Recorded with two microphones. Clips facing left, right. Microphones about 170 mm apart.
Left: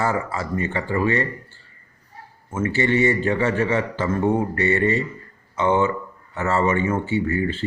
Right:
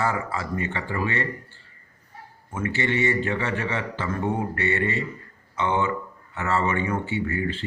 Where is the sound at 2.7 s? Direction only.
45° left (ahead or behind).